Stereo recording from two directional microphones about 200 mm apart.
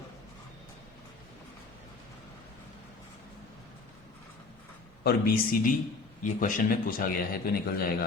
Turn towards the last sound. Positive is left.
turn(degrees=50)  # may be behind; listen again after turning